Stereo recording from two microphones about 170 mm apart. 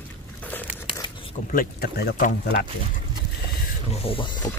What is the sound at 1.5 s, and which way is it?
Speech, 60° left (ahead or behind).